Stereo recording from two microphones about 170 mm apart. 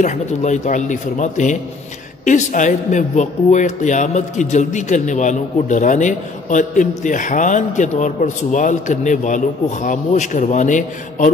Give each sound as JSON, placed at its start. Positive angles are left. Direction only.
{"t": 0.0, "sound": "speech", "side_deg": 45}